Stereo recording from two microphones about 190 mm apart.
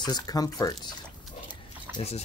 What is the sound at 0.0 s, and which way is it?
Speech, 20° left (ahead or behind).